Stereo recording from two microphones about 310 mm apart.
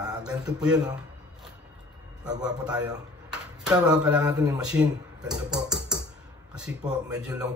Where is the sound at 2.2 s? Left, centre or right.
Centre.